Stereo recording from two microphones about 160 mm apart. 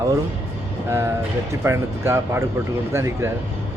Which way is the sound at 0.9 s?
15° right (ahead or behind).